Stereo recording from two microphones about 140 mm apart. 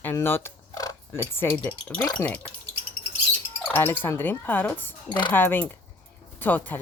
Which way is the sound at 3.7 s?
15° left (ahead or behind).